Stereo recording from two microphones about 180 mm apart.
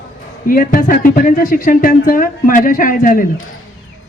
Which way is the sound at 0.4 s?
50° left (ahead or behind).